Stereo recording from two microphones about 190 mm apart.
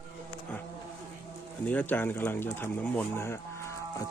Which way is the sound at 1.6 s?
10° left (ahead or behind).